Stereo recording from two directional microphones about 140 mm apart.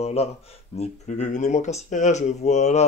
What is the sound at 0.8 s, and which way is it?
Speech, 60° left (ahead or behind).